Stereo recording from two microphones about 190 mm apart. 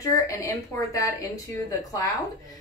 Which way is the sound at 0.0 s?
15° left (ahead or behind).